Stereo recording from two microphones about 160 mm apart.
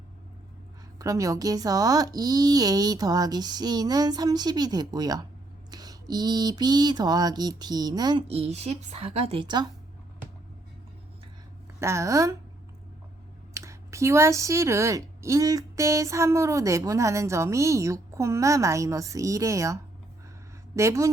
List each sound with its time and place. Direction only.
0.9 s speech: 20° right (ahead or behind)
8.3 s a woman's voice: 40° right (ahead or behind)
11.8 s speech: 15° right (ahead or behind)
13.5 s speech: 20° right (ahead or behind)